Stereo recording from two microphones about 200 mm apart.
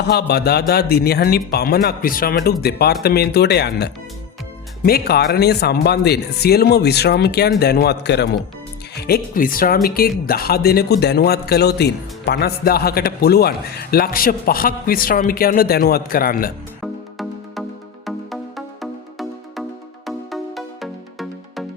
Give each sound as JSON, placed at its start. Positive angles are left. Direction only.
{"t": 0.1, "sound": "a man's voice", "side_deg": 55}
{"t": 16.8, "sound": "music", "side_deg": 0}